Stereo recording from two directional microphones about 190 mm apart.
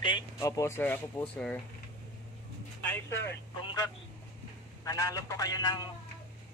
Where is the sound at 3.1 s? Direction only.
65° left (ahead or behind).